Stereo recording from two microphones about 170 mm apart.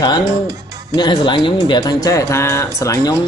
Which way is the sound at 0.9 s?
25° left (ahead or behind).